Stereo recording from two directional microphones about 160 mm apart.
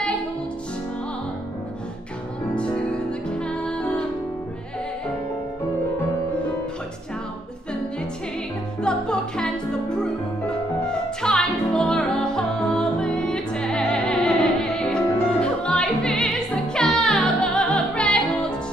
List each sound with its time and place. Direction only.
2.5 s music: 5° left (ahead or behind)
8.8 s music: 5° left (ahead or behind)